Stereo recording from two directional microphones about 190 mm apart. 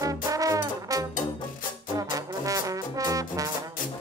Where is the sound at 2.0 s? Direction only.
20° right (ahead or behind).